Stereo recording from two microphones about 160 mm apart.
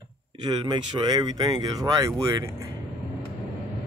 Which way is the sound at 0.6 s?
30° right (ahead or behind).